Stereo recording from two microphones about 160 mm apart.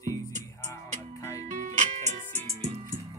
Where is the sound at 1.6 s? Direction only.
50° right (ahead or behind).